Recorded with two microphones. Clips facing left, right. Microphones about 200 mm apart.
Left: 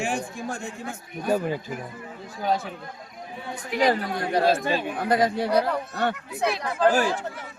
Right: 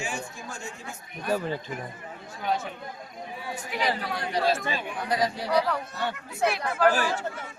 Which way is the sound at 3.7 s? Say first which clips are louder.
Left 7 dB; 45° left (ahead or behind).